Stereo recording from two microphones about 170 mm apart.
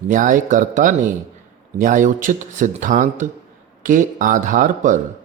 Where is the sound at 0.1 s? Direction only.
50° right (ahead or behind).